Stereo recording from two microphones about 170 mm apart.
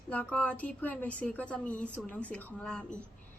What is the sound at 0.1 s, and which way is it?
A woman's voice, 10° left (ahead or behind).